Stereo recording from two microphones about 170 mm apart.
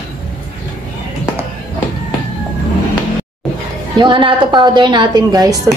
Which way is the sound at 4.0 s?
25° right (ahead or behind).